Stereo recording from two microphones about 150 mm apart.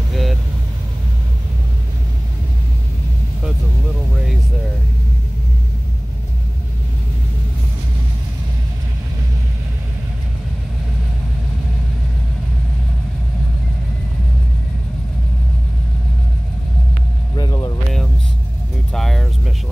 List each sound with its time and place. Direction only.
0.1 s vehicle: centre (ahead or behind)
17.4 s music: 25° left (ahead or behind)
18.9 s vehicle: 5° left (ahead or behind)